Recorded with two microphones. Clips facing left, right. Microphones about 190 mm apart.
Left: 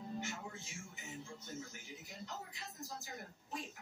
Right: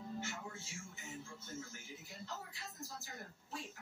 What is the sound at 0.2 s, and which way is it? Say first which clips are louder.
Music: left 1 dB; 15° left (ahead or behind).